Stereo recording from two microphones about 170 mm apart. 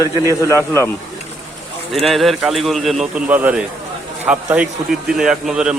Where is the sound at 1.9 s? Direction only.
Centre (ahead or behind).